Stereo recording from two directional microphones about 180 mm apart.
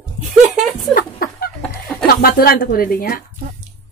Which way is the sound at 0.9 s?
55° left (ahead or behind).